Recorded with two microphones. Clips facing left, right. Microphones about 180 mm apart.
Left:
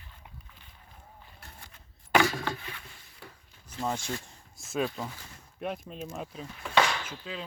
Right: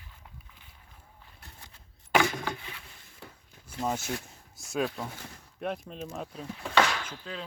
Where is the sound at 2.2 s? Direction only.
20° right (ahead or behind).